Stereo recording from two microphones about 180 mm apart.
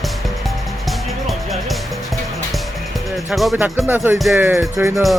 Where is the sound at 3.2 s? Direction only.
Centre (ahead or behind).